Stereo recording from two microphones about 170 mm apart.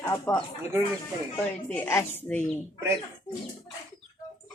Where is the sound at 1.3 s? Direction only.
15° left (ahead or behind).